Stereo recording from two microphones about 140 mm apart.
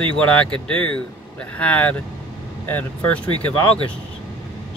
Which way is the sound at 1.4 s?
10° left (ahead or behind).